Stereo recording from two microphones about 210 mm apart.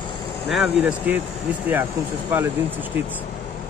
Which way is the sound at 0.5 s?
5° right (ahead or behind).